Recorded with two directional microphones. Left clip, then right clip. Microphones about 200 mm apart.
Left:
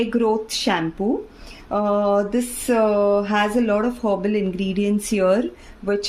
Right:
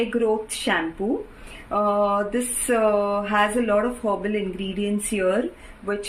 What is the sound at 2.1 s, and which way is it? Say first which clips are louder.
Speech: left 3 dB; 60° left (ahead or behind).